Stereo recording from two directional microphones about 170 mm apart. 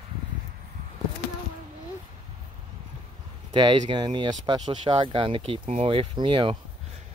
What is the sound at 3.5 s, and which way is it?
Speech, 30° right (ahead or behind).